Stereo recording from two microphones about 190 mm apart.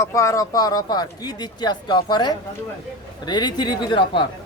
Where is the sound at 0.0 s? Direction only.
15° left (ahead or behind).